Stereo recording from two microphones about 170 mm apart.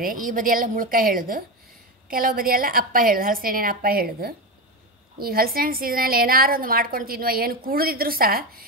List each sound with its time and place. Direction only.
0.0 s a woman's voice: 55° right (ahead or behind)